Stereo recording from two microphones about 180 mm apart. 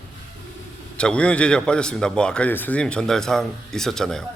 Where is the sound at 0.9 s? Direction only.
5° left (ahead or behind).